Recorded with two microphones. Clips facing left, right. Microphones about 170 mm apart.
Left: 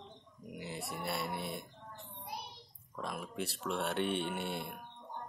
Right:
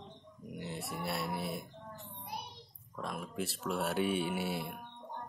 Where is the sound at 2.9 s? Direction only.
Centre (ahead or behind).